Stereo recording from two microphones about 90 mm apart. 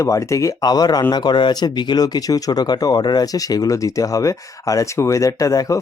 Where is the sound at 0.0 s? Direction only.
35° left (ahead or behind).